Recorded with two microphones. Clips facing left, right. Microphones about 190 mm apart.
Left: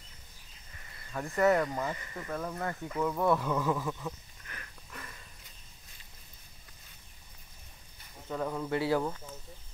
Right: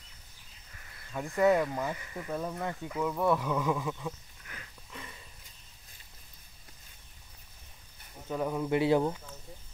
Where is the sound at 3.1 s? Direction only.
10° right (ahead or behind).